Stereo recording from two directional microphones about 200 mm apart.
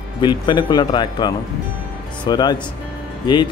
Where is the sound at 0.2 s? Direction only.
20° left (ahead or behind).